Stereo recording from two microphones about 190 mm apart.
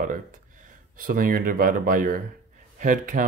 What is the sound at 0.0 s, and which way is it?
Speech, 45° right (ahead or behind).